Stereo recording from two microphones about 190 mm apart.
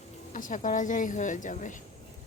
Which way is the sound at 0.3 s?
45° left (ahead or behind).